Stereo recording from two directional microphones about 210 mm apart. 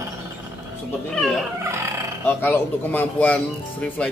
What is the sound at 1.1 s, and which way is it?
Speech, centre (ahead or behind).